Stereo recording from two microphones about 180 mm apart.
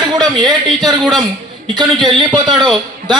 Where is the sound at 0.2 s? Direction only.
20° right (ahead or behind).